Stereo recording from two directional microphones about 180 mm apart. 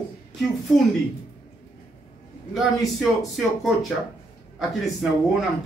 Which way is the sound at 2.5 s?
Centre (ahead or behind).